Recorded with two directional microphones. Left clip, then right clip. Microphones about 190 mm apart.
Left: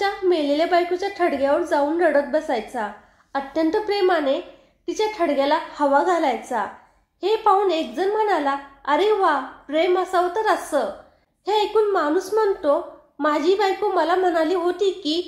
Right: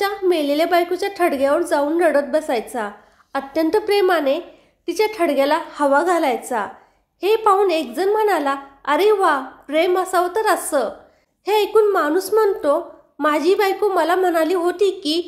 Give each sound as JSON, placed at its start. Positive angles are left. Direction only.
{"t": 0.0, "sound": "a woman's voice", "side_deg": -30}